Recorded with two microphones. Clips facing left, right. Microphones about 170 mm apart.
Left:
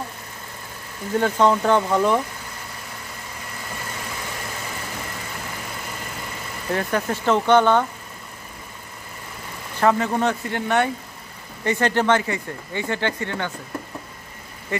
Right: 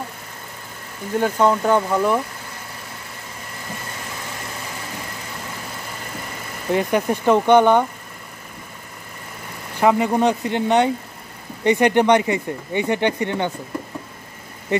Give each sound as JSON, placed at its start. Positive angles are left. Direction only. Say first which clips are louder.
{"t": 1.2, "sound": "speech", "louder": "right 1 dB", "side_deg": -10}
{"t": 6.7, "sound": "speech", "louder": "right 4 dB", "side_deg": -15}
{"t": 9.8, "sound": "speech", "louder": "right 3 dB", "side_deg": -15}
{"t": 14.7, "sound": "speech", "louder": "right 6 dB", "side_deg": -20}